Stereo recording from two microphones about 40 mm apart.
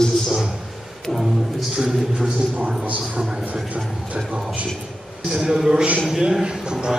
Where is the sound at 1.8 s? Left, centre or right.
Centre.